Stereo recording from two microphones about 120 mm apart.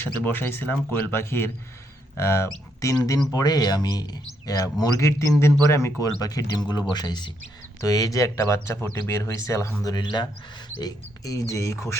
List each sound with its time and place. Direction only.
0.0 s speech: 15° left (ahead or behind)
9.8 s speech: 35° left (ahead or behind)